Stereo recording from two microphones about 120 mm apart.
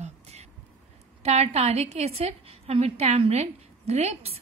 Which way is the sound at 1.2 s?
65° right (ahead or behind).